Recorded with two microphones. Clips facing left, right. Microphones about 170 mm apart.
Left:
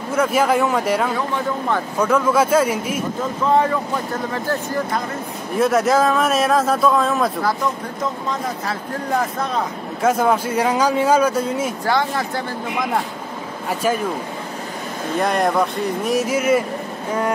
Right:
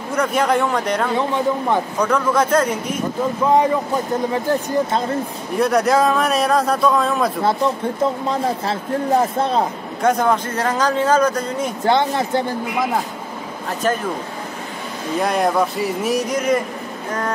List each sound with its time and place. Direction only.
0.1 s speech: 5° left (ahead or behind)
1.1 s speech: 20° right (ahead or behind)
2.0 s speech: 5° left (ahead or behind)
4.3 s speech: 20° right (ahead or behind)
5.6 s speech: centre (ahead or behind)
7.4 s speech: 30° right (ahead or behind)
10.0 s speech: 5° left (ahead or behind)
11.8 s speech: 20° right (ahead or behind)
15.1 s speech: centre (ahead or behind)